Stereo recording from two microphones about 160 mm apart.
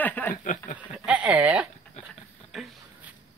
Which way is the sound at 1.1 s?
10° right (ahead or behind).